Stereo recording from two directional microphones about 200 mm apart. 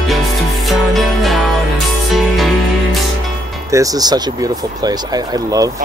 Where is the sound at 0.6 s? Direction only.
Centre (ahead or behind).